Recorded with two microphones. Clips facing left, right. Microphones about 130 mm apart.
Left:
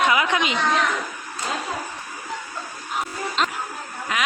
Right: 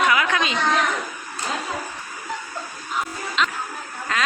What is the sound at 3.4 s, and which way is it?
Music, 40° left (ahead or behind).